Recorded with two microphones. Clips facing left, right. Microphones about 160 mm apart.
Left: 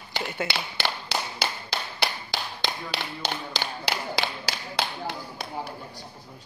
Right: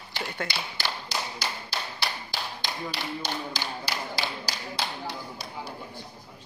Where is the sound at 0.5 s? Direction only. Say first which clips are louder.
Left 3 dB; 70° left (ahead or behind).